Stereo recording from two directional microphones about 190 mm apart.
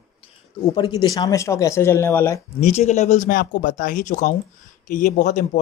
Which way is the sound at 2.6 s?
35° left (ahead or behind).